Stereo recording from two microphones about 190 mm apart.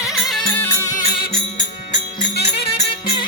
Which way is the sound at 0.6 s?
15° left (ahead or behind).